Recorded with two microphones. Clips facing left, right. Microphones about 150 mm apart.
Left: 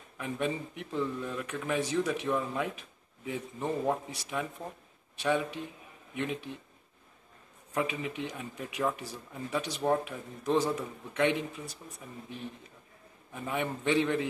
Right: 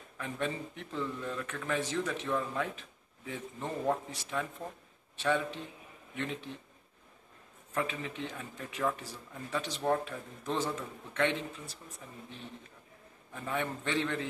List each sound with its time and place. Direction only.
0.2 s speech: 10° left (ahead or behind)
7.7 s speech: 10° left (ahead or behind)
13.3 s speech: 15° left (ahead or behind)